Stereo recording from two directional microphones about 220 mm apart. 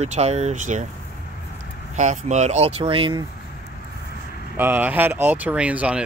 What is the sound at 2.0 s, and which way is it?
Speech, 35° right (ahead or behind).